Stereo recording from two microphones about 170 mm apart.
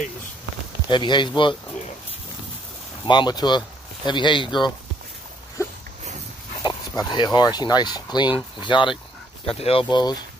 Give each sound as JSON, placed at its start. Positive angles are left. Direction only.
{"t": 0.8, "sound": "speech", "side_deg": 25}
{"t": 3.1, "sound": "speech", "side_deg": 25}
{"t": 5.6, "sound": "a sound", "side_deg": 20}
{"t": 6.6, "sound": "speech", "side_deg": 25}